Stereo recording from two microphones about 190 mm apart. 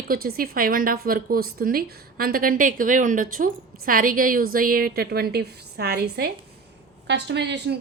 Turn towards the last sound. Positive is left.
turn(degrees=-65)  # may be behind; listen again after turning